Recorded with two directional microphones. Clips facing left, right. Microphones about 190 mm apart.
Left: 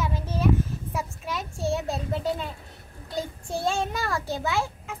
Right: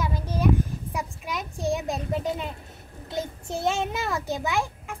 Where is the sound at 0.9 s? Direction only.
15° right (ahead or behind).